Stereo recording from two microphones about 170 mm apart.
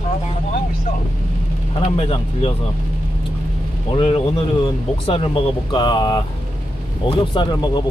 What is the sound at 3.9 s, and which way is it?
Speech, 35° left (ahead or behind).